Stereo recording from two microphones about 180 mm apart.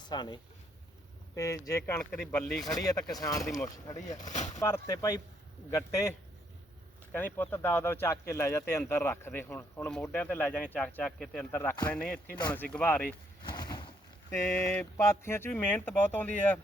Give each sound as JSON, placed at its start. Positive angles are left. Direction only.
{"t": 0.0, "sound": "speech", "side_deg": 25}
{"t": 1.4, "sound": "speech", "side_deg": 20}
{"t": 2.3, "sound": "speech", "side_deg": 5}
{"t": 2.7, "sound": "speech", "side_deg": 20}
{"t": 4.2, "sound": "speech", "side_deg": 40}
{"t": 4.6, "sound": "speech", "side_deg": 15}
{"t": 13.4, "sound": "a sound", "side_deg": 25}
{"t": 14.3, "sound": "speech", "side_deg": 15}